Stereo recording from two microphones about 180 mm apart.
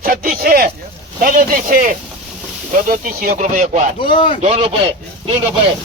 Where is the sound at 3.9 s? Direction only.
30° left (ahead or behind).